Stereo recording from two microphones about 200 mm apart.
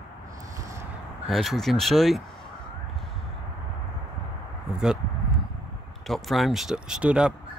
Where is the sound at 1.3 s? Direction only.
Centre (ahead or behind).